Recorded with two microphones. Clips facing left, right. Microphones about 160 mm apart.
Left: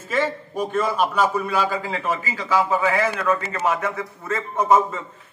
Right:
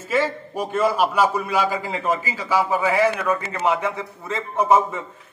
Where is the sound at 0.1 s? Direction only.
10° right (ahead or behind).